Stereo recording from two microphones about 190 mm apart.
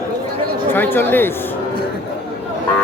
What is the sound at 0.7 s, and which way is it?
Speech, 10° left (ahead or behind).